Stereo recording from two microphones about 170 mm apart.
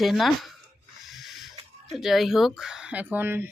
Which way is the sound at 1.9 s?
Centre (ahead or behind).